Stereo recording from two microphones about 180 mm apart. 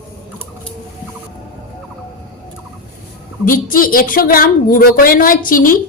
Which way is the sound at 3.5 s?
50° left (ahead or behind).